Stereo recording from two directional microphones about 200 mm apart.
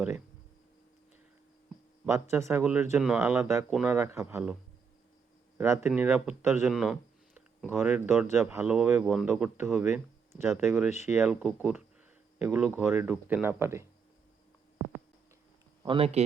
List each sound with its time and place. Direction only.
2.0 s speech: 15° right (ahead or behind)
3.7 s a man's voice: centre (ahead or behind)
3.9 s speech: 15° right (ahead or behind)
5.5 s speech: 15° right (ahead or behind)
15.8 s speech: 25° right (ahead or behind)